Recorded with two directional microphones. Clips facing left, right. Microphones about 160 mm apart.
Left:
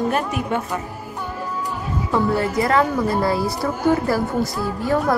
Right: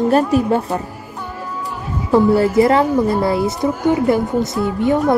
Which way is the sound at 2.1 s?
30° right (ahead or behind).